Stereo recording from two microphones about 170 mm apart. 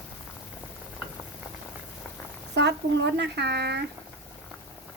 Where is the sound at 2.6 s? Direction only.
85° right.